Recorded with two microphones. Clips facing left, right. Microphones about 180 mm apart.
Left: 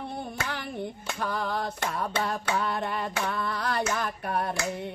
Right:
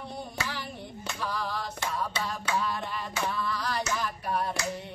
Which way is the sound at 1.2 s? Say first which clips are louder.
Left 4 dB; 55° left (ahead or behind).